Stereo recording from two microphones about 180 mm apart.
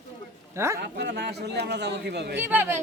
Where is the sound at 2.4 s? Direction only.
10° right (ahead or behind).